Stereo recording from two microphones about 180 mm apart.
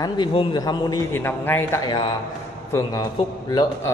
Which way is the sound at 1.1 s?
10° left (ahead or behind).